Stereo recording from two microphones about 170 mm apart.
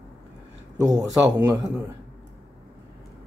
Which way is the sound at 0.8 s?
20° right (ahead or behind).